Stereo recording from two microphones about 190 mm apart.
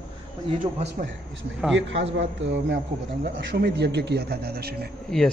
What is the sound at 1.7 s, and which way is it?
A man's voice, 70° right (ahead or behind).